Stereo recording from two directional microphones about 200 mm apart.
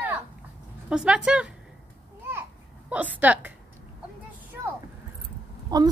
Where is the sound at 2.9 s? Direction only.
10° right (ahead or behind).